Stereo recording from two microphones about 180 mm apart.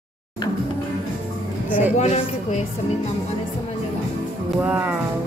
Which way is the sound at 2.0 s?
40° left (ahead or behind).